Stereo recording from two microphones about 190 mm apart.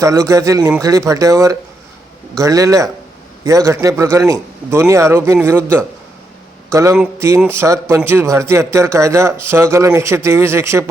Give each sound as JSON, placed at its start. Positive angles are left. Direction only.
{"t": 0.0, "sound": "a man's voice", "side_deg": -15}